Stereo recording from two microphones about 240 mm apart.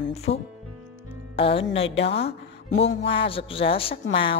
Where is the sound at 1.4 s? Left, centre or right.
Left.